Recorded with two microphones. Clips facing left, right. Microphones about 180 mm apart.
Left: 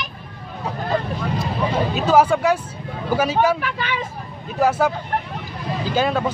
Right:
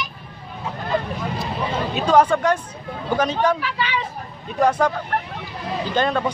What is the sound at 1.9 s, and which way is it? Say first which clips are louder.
Speech: right 1 dB; 5° left (ahead or behind).